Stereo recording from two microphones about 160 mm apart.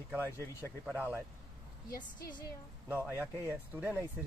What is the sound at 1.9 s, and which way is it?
Speech, 70° left (ahead or behind).